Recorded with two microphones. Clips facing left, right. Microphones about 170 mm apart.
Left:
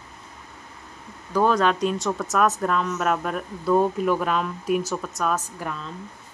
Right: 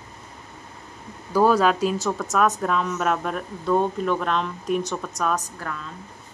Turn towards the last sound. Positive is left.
turn(degrees=15)  # may be behind; listen again after turning